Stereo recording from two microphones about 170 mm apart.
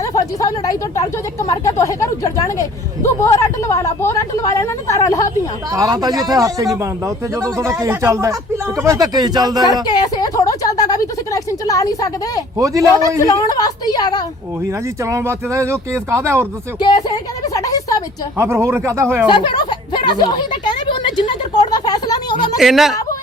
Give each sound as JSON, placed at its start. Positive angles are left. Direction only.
{"t": 0.0, "sound": "speech", "side_deg": 20}
{"t": 5.7, "sound": "speech", "side_deg": -20}
{"t": 9.9, "sound": "a woman's voice", "side_deg": 20}
{"t": 12.5, "sound": "speech", "side_deg": -20}
{"t": 12.8, "sound": "speech", "side_deg": 20}
{"t": 15.0, "sound": "speech", "side_deg": -15}
{"t": 17.5, "sound": "a sound", "side_deg": 20}
{"t": 18.3, "sound": "speech", "side_deg": -15}
{"t": 19.3, "sound": "a sound", "side_deg": 30}
{"t": 22.5, "sound": "speech", "side_deg": 0}